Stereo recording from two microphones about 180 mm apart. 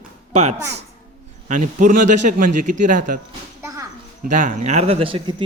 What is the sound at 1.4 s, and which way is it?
A man's voice, 45° right (ahead or behind).